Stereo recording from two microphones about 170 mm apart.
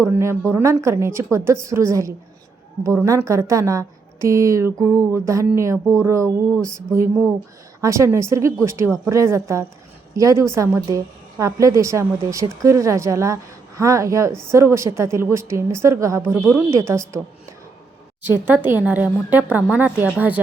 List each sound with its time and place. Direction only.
0.0 s a woman's voice: 15° right (ahead or behind)
7.8 s a woman's voice: 15° right (ahead or behind)
18.3 s a woman's voice: 10° right (ahead or behind)